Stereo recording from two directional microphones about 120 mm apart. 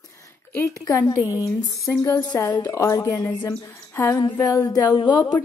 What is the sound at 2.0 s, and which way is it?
A woman's voice, 25° left (ahead or behind).